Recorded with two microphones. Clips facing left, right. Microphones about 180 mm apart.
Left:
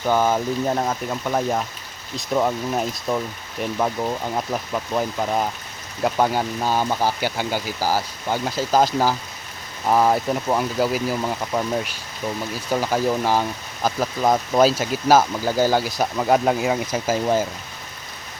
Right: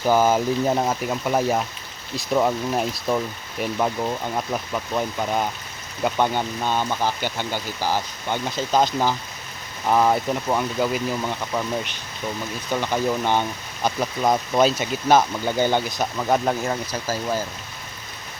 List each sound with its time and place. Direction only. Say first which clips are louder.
0.0 s speech: right 1 dB; 5° right (ahead or behind)
16.9 s speech: left 5 dB; 20° left (ahead or behind)